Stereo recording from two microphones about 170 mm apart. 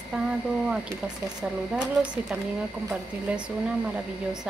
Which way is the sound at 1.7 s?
5° right (ahead or behind).